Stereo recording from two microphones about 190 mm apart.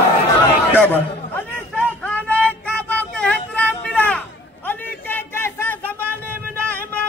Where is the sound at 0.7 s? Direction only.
10° left (ahead or behind).